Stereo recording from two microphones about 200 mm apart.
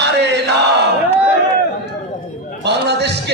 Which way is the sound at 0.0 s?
60° right (ahead or behind).